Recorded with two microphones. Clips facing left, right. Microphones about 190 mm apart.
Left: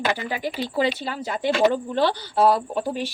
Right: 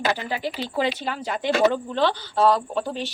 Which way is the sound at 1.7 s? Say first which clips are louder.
Left 1 dB; 10° left (ahead or behind).